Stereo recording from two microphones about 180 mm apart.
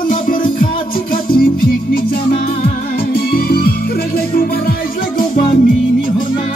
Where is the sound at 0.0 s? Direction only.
50° left (ahead or behind).